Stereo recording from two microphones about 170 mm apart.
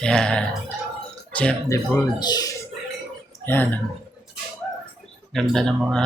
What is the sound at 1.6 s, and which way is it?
Speech, 20° left (ahead or behind).